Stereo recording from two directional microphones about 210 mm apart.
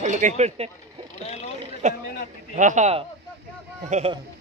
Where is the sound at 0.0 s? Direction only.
35° right (ahead or behind).